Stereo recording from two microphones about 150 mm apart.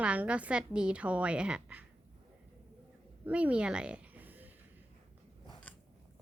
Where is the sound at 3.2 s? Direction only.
10° right (ahead or behind).